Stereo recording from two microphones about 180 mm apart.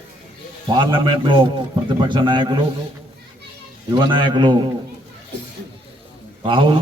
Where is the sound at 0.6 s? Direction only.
25° right (ahead or behind).